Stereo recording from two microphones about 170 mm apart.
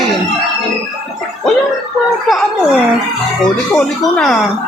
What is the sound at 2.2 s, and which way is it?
Speech, centre (ahead or behind).